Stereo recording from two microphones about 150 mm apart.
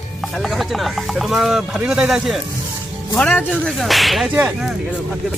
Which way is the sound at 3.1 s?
10° left (ahead or behind).